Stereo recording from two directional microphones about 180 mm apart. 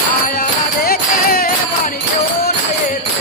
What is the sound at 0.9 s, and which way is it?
Music, 55° left (ahead or behind).